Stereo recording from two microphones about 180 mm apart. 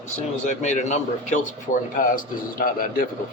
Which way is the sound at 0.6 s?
40° left (ahead or behind).